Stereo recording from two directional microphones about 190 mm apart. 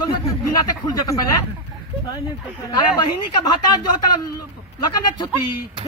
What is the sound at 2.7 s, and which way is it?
Speech, 20° left (ahead or behind).